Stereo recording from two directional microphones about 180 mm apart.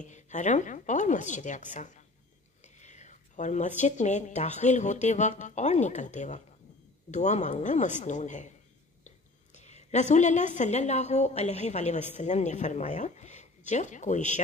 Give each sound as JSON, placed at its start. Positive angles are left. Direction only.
{"t": 0.0, "sound": "a woman's voice", "side_deg": 40}